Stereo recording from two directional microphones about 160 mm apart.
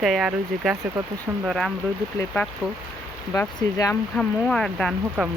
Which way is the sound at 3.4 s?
20° left (ahead or behind).